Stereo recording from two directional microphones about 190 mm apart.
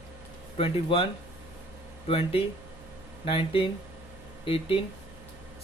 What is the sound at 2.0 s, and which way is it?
Speech, 30° left (ahead or behind).